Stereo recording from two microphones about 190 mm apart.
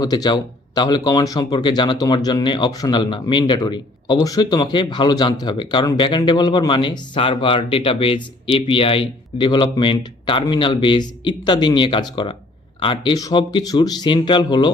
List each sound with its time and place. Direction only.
0.0 s speech: 20° left (ahead or behind)